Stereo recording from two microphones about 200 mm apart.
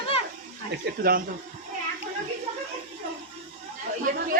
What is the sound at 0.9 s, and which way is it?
Speech, 50° right (ahead or behind).